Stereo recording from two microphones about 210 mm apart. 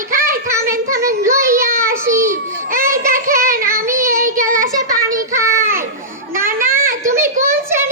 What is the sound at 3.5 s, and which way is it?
Child singing, 45° right (ahead or behind).